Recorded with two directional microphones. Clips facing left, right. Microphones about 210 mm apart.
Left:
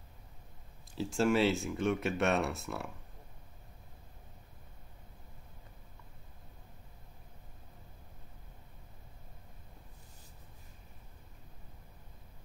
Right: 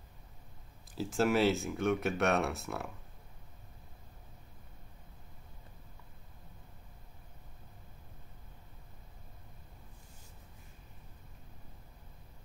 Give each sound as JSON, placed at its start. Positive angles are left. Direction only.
{"t": 0.9, "sound": "speech", "side_deg": 0}